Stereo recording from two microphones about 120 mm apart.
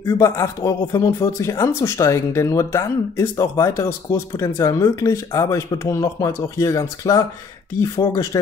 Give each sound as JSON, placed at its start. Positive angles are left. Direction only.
{"t": 0.0, "sound": "speech", "side_deg": 25}